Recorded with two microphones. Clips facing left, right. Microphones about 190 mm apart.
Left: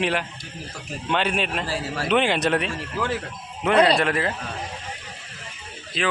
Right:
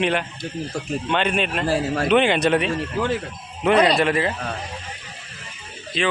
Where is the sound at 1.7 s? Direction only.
50° right (ahead or behind).